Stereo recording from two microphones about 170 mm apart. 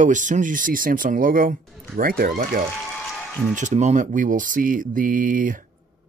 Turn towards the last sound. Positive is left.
turn(degrees=-50)  # may be behind; listen again after turning